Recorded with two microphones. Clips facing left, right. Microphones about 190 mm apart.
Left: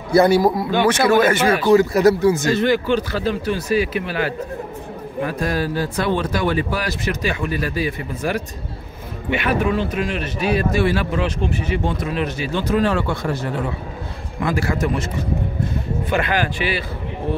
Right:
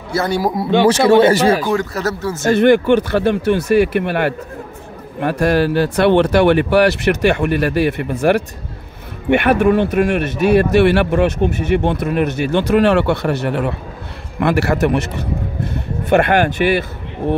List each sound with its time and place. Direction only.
0.1 s speech: 15° left (ahead or behind)
0.6 s speech: 30° right (ahead or behind)
1.7 s speech: 10° left (ahead or behind)
2.5 s a man's voice: 60° right (ahead or behind)